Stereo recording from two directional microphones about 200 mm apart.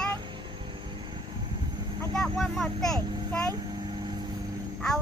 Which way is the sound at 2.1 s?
Centre (ahead or behind).